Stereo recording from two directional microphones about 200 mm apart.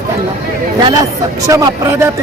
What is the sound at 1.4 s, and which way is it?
Speech, 20° right (ahead or behind).